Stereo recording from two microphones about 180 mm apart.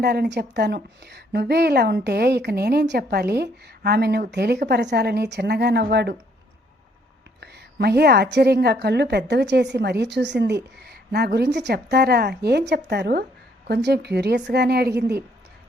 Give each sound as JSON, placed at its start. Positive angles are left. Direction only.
{"t": 0.0, "sound": "a woman's voice", "side_deg": -65}
{"t": 7.4, "sound": "a woman's voice", "side_deg": -65}